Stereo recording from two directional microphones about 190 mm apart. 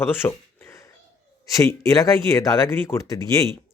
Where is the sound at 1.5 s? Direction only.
15° left (ahead or behind).